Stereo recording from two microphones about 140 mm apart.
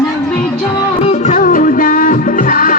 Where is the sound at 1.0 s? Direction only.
55° left (ahead or behind); by 2.7 s 80° left.